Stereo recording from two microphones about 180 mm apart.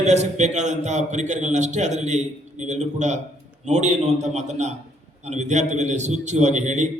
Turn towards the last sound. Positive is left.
turn(degrees=-40)  # may be behind; listen again after turning